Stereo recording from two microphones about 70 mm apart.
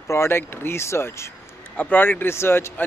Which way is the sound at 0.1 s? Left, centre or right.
Left.